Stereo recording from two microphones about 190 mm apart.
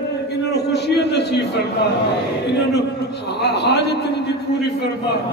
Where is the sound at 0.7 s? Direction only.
60° left (ahead or behind).